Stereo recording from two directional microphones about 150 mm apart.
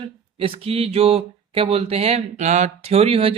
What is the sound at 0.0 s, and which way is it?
Speech, 35° right (ahead or behind).